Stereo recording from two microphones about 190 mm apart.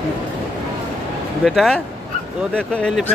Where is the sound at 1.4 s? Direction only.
5° left (ahead or behind).